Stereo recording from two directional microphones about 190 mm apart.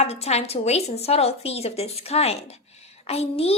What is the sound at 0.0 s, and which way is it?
Speech, 35° left (ahead or behind).